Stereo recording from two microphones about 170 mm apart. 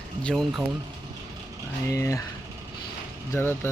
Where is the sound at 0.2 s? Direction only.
5° left (ahead or behind).